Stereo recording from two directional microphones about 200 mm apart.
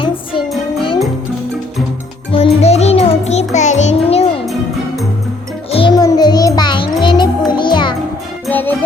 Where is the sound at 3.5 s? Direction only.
35° left (ahead or behind).